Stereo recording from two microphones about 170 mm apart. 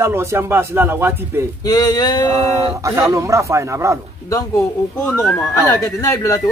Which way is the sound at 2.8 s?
20° right (ahead or behind).